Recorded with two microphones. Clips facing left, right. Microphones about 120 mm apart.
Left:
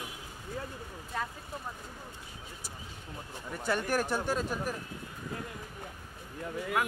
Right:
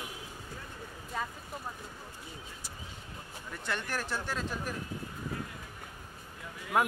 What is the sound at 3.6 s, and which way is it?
Speech, 10° left (ahead or behind).